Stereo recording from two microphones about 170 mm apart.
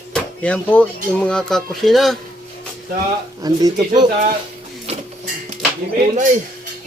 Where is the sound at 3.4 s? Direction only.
25° right (ahead or behind).